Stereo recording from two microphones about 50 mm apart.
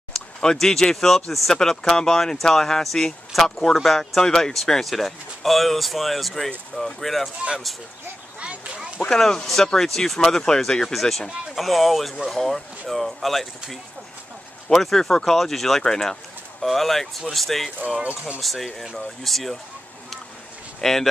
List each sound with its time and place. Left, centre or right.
0.4 s speech: centre
8.7 s a sound: centre
9.1 s speech: centre
17.8 s speech: right
18.4 s speech: centre
20.8 s speech: centre